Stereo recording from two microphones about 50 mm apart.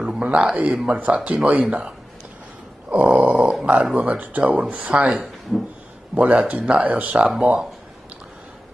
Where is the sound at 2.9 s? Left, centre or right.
Right.